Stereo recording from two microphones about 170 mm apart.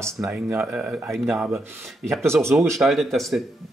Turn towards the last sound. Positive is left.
turn(degrees=0)  # may be behind; listen again after turning